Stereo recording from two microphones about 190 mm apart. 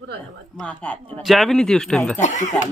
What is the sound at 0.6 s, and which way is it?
Speech, 5° left (ahead or behind).